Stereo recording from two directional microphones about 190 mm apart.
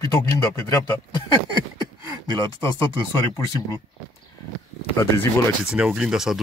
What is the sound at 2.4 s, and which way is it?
Speech, 15° left (ahead or behind).